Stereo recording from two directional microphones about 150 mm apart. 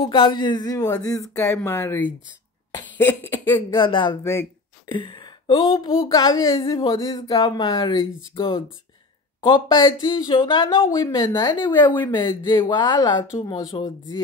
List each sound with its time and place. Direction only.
0.0 s speech: 35° left (ahead or behind); by 2.1 s 15° left (ahead or behind)
2.7 s cough: 15° left (ahead or behind)
3.7 s speech: 35° left (ahead or behind)
4.2 s speech: 20° left (ahead or behind)
4.8 s a sound: 30° left (ahead or behind)
6.0 s speech: 25° left (ahead or behind)
11.5 s speech: 30° left (ahead or behind)